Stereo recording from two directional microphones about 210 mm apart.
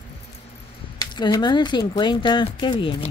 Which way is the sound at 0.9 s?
20° left (ahead or behind).